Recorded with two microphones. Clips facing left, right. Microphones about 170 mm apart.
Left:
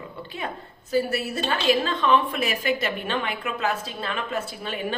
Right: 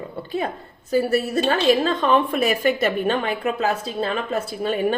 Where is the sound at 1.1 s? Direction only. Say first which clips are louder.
Right 7 dB; 40° right (ahead or behind).